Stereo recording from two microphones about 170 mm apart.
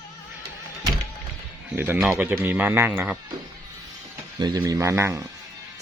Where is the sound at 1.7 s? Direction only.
10° right (ahead or behind).